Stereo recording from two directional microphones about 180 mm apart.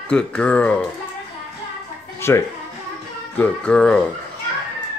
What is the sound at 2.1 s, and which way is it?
Music, 15° left (ahead or behind).